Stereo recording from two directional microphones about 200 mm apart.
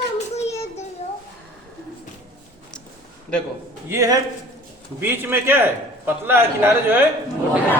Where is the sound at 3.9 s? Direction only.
15° right (ahead or behind).